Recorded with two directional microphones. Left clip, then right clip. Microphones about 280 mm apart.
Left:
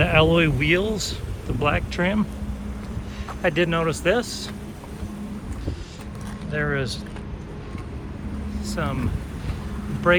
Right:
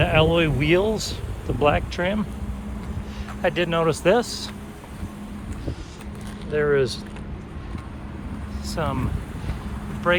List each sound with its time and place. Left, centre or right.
0.0 s speech: centre
3.4 s speech: centre
6.5 s speech: centre
8.6 s speech: centre
10.1 s speech: centre